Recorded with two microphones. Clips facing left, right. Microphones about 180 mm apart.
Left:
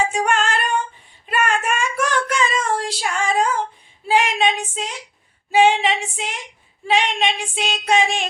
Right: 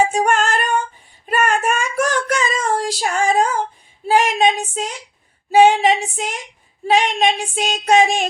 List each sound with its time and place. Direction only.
0.1 s female singing: 40° right (ahead or behind)
1.3 s child singing: 40° right (ahead or behind)